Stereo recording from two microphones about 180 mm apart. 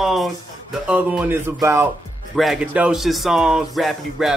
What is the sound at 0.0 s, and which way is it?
Speech, centre (ahead or behind).